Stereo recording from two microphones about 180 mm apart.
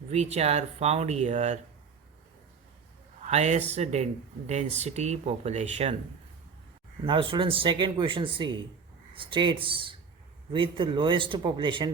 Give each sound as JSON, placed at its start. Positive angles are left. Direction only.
{"t": 0.1, "sound": "speech", "side_deg": -35}
{"t": 3.2, "sound": "speech", "side_deg": -40}
{"t": 7.0, "sound": "speech", "side_deg": -30}